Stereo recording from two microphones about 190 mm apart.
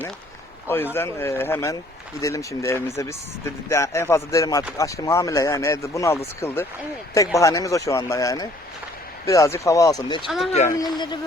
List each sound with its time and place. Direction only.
0.9 s speech: 15° left (ahead or behind)
10.2 s speech: centre (ahead or behind)
10.5 s speech: 40° left (ahead or behind)
10.8 s speech: 20° left (ahead or behind)